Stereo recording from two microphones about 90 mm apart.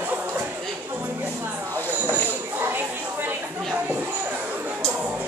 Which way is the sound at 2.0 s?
25° right (ahead or behind).